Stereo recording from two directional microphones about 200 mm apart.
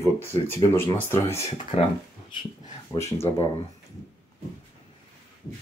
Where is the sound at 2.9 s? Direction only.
15° left (ahead or behind).